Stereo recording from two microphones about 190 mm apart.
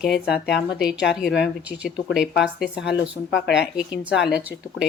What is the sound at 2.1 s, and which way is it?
Speech, 5° right (ahead or behind).